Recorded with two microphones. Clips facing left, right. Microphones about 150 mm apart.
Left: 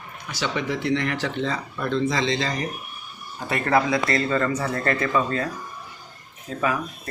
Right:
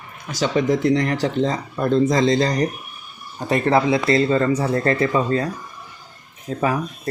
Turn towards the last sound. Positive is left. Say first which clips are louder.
# right 4 dB
turn(degrees=-30)  # may be behind; listen again after turning